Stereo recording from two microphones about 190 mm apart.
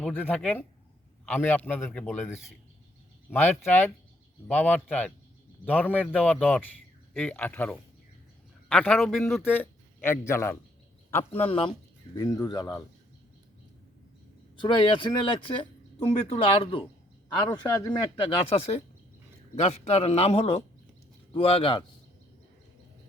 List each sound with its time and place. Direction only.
0.0 s a man's voice: 10° left (ahead or behind)
3.2 s a man's voice: 10° left (ahead or behind)
11.3 s speech: 30° left (ahead or behind)
12.1 s speech: 20° left (ahead or behind)
14.6 s speech: 25° left (ahead or behind)
16.2 s a man's voice: 30° left (ahead or behind)